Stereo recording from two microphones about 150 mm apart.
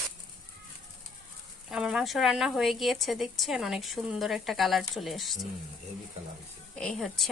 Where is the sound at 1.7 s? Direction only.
5° right (ahead or behind).